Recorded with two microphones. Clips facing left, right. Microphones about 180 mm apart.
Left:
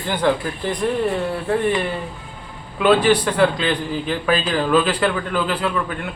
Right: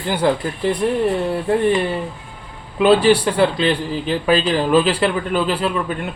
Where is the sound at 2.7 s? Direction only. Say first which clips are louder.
Right 2 dB; 30° right (ahead or behind).